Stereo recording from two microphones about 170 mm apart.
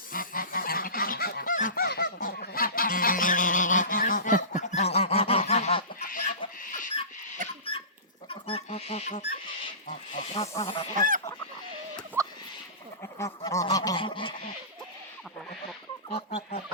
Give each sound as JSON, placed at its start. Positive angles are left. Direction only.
{"t": 0.1, "sound": "goose", "side_deg": 55}
{"t": 6.1, "sound": "chicken", "side_deg": 55}
{"t": 6.6, "sound": "a sound", "side_deg": 50}
{"t": 7.4, "sound": "dog", "side_deg": -50}
{"t": 8.3, "sound": "a sound", "side_deg": 35}
{"t": 9.8, "sound": "snake", "side_deg": 40}
{"t": 10.6, "sound": "goose", "side_deg": 30}
{"t": 10.9, "sound": "goose", "side_deg": -50}
{"t": 12.2, "sound": "a sound", "side_deg": -20}
{"t": 13.0, "sound": "goose", "side_deg": 20}
{"t": 16.0, "sound": "chicken", "side_deg": 35}